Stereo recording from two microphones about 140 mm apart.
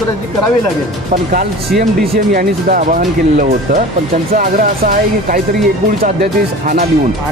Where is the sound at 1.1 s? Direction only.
90° right.